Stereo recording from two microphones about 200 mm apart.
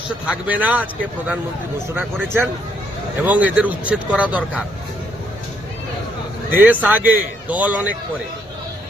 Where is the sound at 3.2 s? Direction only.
5° right (ahead or behind).